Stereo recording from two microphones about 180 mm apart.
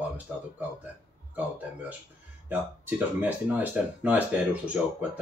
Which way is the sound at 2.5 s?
10° right (ahead or behind).